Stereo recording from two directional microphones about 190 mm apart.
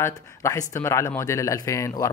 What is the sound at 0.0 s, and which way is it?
Speech, 15° left (ahead or behind).